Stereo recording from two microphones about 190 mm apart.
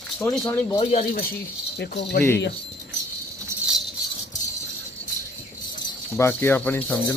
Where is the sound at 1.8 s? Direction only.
60° left (ahead or behind).